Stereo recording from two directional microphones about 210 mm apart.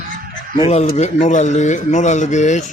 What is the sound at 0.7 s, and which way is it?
A man's voice, 30° left (ahead or behind).